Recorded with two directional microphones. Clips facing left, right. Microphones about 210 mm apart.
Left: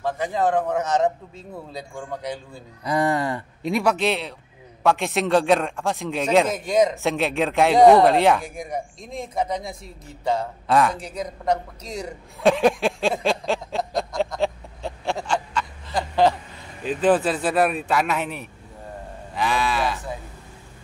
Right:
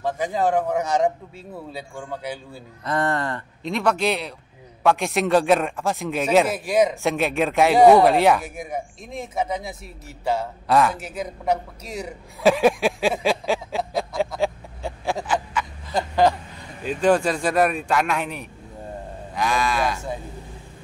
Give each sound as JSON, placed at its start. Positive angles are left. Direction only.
{"t": 0.0, "sound": "a man's voice", "side_deg": -10}
{"t": 2.8, "sound": "a man's voice", "side_deg": 10}
{"t": 15.1, "sound": "snicker", "side_deg": -10}
{"t": 16.8, "sound": "a man's voice", "side_deg": 5}